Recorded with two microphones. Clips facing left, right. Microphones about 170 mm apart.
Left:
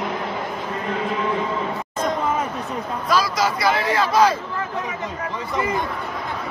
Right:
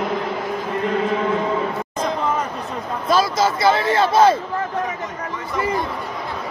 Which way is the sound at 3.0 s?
25° right (ahead or behind).